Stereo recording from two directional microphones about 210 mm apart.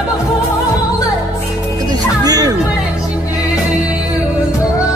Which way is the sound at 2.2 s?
20° right (ahead or behind).